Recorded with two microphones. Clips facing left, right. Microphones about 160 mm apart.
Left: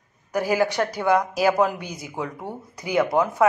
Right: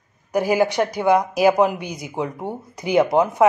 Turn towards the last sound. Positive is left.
turn(degrees=-25)  # may be behind; listen again after turning